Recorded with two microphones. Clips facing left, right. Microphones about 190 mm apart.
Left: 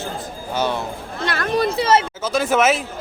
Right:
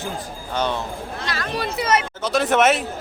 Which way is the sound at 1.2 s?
55° left (ahead or behind).